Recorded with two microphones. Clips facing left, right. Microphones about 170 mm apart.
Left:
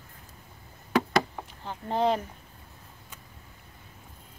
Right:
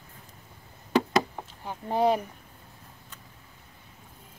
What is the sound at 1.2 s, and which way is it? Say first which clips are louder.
Chop: even; 15° right (ahead or behind).